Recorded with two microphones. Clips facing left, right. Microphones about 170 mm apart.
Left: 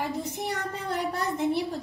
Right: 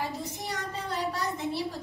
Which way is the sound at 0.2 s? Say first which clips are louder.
Left 4 dB; 60° left (ahead or behind).